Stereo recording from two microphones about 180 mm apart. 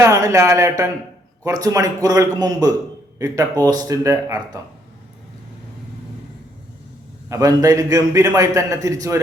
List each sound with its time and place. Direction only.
0.0 s speech: 15° right (ahead or behind)
7.3 s speech: 20° right (ahead or behind)